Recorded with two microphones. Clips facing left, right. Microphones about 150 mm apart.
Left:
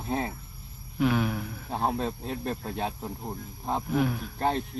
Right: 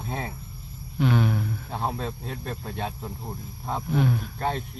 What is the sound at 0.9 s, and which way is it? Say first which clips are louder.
Speech: right 2 dB; 5° left (ahead or behind).